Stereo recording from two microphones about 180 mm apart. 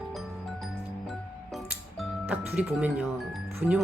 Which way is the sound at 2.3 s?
10° right (ahead or behind).